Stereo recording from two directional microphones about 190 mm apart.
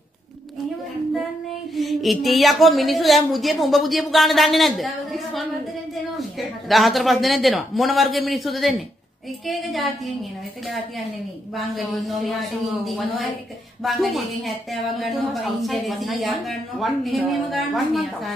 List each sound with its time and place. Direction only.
1.8 s a woman's voice: centre (ahead or behind)
12.3 s a woman's voice: centre (ahead or behind)